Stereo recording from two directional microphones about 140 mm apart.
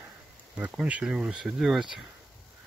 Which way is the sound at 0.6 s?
5° right (ahead or behind).